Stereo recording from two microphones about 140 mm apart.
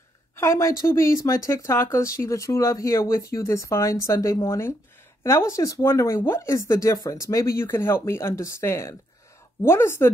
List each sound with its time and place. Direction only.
0.4 s speech: 20° left (ahead or behind)